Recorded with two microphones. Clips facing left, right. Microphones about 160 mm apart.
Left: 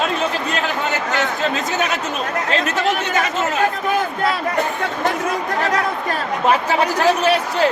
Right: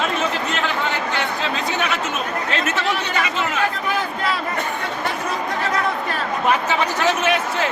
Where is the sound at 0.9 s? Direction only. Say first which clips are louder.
Left 2 dB; 45° left (ahead or behind).